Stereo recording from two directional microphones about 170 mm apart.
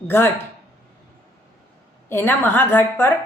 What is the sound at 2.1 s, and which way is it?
A woman's voice, 10° left (ahead or behind).